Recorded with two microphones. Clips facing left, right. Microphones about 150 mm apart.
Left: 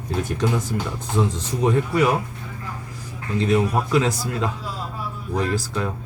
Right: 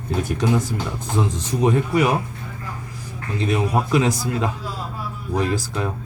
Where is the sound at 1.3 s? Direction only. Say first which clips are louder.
Right 1 dB; 15° right (ahead or behind).